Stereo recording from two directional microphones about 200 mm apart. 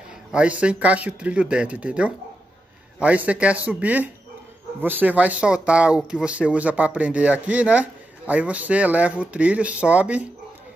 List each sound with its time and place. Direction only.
0.3 s speech: 5° right (ahead or behind)